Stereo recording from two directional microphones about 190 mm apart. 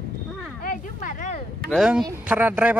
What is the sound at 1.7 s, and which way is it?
Speech, centre (ahead or behind).